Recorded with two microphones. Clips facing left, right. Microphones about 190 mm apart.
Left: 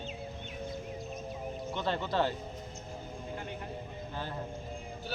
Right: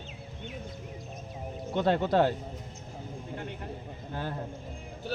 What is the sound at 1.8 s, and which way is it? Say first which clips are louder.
Speech: right 7 dB; 55° right (ahead or behind).